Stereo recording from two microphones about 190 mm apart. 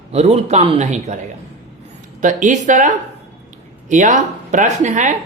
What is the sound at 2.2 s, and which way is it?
Speech, 40° right (ahead or behind).